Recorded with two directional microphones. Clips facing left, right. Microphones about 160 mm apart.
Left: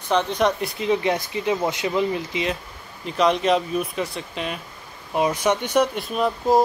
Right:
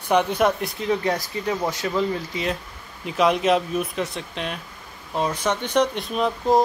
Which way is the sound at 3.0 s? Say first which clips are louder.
Even; 5° right (ahead or behind).